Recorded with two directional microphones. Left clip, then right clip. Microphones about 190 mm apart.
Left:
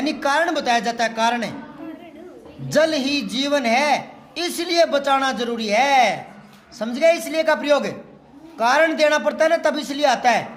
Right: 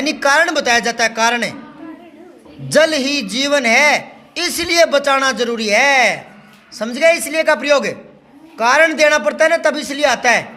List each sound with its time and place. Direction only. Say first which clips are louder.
0.0 s a man's voice: right 6 dB; 20° right (ahead or behind)
2.6 s a man's voice: right 5 dB; 15° right (ahead or behind)